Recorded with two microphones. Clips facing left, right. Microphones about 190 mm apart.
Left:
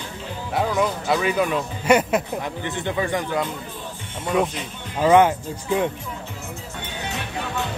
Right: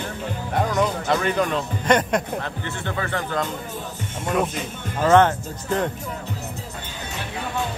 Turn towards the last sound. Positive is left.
turn(degrees=10)  # may be behind; listen again after turning